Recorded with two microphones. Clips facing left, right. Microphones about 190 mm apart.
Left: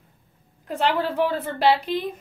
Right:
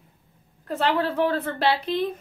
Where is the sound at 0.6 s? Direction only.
15° left (ahead or behind).